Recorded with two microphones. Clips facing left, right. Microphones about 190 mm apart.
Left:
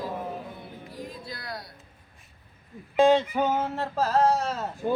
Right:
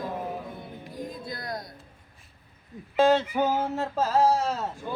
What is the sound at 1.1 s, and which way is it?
Music, 50° right (ahead or behind).